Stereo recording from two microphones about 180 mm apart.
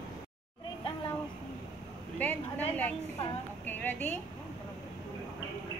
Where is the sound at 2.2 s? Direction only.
10° left (ahead or behind).